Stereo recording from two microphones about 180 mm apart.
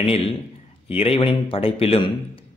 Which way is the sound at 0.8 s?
30° left (ahead or behind).